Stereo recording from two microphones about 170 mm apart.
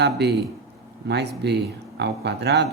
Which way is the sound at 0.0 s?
80° right.